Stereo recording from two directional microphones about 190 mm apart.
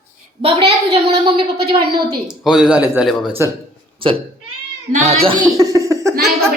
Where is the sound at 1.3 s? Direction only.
30° right (ahead or behind).